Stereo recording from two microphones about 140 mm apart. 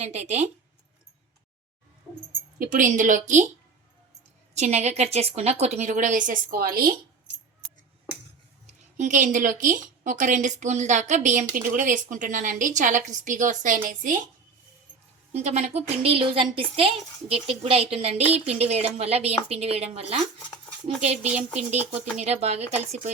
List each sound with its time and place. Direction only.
0.0 s a woman's voice: 55° right (ahead or behind)
2.6 s a woman's voice: 70° right (ahead or behind)
4.5 s a woman's voice: 55° right (ahead or behind); by 6.9 s 90° right
8.6 s a woman's voice: 60° right (ahead or behind)
15.3 s a woman's voice: 50° right (ahead or behind)